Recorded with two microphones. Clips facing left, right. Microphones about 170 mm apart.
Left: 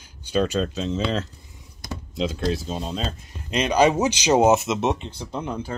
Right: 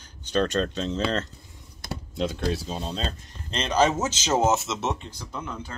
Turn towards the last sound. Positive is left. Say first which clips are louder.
# left 6 dB
turn(degrees=35)  # may be behind; listen again after turning